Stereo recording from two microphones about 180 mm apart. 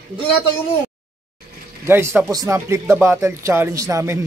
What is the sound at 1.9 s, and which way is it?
Speech, 10° right (ahead or behind).